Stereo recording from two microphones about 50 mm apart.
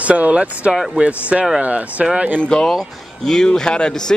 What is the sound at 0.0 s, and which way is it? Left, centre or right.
Speech, right.